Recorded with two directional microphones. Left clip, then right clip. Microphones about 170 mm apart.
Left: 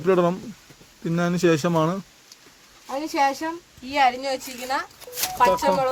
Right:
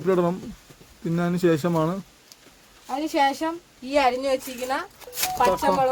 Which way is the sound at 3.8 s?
60° right (ahead or behind).